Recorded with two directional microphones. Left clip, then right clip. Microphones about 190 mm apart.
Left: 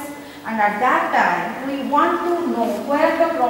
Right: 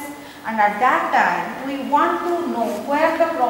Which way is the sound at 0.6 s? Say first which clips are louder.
Even; centre (ahead or behind).